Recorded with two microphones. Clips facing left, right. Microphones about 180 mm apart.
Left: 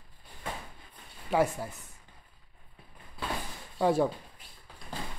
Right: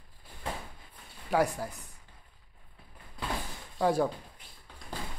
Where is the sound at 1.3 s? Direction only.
Centre (ahead or behind).